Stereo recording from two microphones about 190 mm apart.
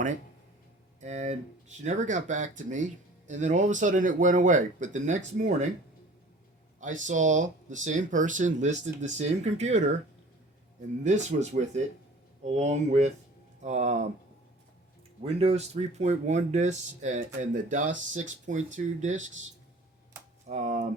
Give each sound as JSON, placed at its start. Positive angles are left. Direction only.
{"t": 1.0, "sound": "speech", "side_deg": -40}
{"t": 6.7, "sound": "speech", "side_deg": -40}
{"t": 11.0, "sound": "speech", "side_deg": -40}
{"t": 15.2, "sound": "speech", "side_deg": -30}
{"t": 20.5, "sound": "speech", "side_deg": -40}